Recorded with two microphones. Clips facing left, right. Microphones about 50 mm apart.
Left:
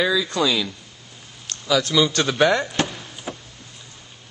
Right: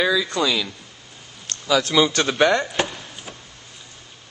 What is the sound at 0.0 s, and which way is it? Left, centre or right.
A man's voice, centre.